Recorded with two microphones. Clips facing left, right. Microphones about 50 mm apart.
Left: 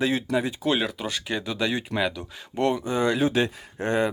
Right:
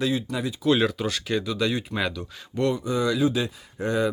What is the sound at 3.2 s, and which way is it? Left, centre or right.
Speech, left.